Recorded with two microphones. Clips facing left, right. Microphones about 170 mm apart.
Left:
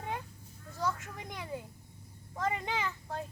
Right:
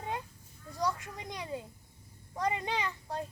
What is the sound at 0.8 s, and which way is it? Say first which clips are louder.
Children playing: right 1 dB; 15° right (ahead or behind).